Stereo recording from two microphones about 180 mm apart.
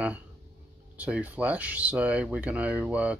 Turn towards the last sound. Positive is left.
turn(degrees=-5)  # may be behind; listen again after turning